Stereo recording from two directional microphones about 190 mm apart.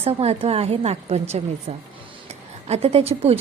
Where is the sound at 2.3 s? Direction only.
35° right (ahead or behind).